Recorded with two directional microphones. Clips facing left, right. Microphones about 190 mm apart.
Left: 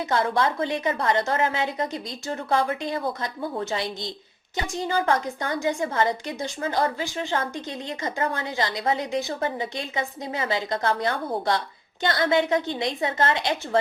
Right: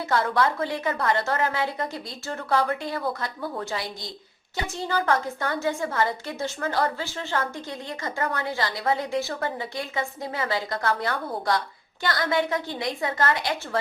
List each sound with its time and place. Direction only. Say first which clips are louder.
0.1 s a woman's voice: right 1 dB; 20° left (ahead or behind)